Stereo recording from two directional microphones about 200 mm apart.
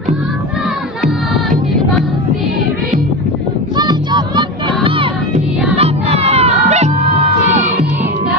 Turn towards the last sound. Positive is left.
turn(degrees=-35)  # may be behind; listen again after turning